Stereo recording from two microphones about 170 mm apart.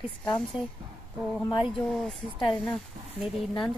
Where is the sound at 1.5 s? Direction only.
Centre (ahead or behind).